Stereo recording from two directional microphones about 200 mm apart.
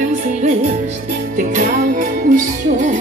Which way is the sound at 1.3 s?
40° right (ahead or behind).